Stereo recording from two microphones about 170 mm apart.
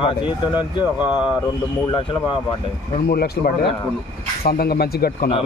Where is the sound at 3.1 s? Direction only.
65° left (ahead or behind).